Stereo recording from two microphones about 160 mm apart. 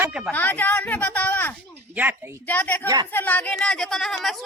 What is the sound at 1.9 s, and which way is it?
Speech, 10° right (ahead or behind).